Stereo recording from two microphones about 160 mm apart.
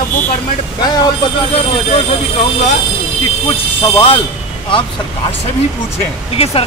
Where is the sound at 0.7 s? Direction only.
25° left (ahead or behind).